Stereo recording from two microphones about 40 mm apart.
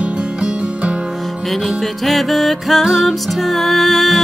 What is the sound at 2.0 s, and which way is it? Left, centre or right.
Music, centre.